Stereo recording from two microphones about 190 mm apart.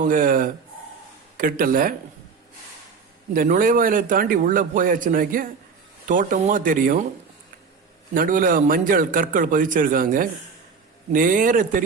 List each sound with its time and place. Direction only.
0.0 s a man's voice: 45° right (ahead or behind)
3.3 s a man's voice: 45° right (ahead or behind)
8.1 s a man's voice: 45° right (ahead or behind)